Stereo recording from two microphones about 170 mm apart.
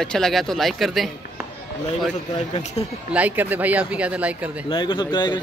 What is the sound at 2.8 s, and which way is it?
Speech, 35° left (ahead or behind).